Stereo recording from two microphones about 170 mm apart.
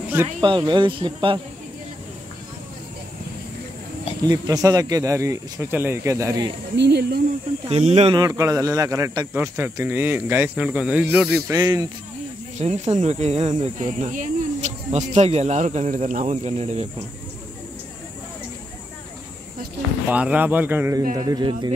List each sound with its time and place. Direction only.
0.4 s speech: 30° right (ahead or behind)
4.2 s speech: 20° right (ahead or behind)
6.8 s speech: 75° right (ahead or behind)
7.8 s speech: 40° right (ahead or behind)
8.2 s speech: 20° right (ahead or behind)
11.5 s speech: 20° right (ahead or behind)
12.5 s speech: 40° right (ahead or behind)
20.1 s speech: 10° right (ahead or behind)
21.2 s speech: 25° right (ahead or behind)